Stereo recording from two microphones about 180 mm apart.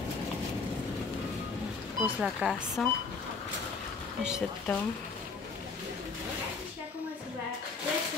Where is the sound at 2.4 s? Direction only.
Centre (ahead or behind).